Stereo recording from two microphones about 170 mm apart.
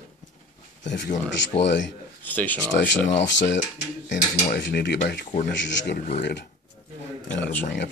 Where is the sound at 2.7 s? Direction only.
90° left.